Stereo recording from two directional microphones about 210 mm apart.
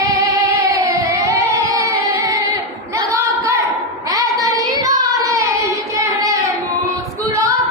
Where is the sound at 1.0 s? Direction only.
15° right (ahead or behind).